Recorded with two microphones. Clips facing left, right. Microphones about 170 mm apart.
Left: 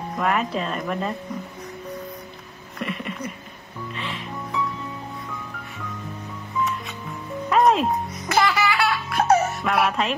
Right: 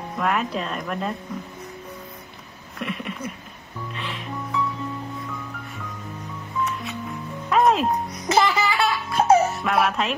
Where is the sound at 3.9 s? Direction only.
Centre (ahead or behind).